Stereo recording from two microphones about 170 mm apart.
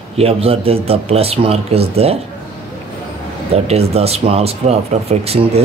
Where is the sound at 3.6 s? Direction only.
35° right (ahead or behind).